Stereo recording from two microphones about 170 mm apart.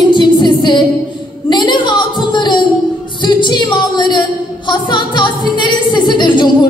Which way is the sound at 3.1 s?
25° left (ahead or behind).